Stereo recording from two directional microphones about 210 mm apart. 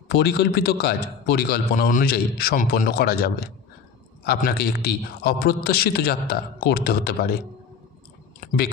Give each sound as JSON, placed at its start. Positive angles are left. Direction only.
{"t": 0.1, "sound": "a man's voice", "side_deg": 50}